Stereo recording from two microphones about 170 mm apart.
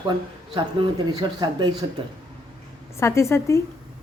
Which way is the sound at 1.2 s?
25° right (ahead or behind).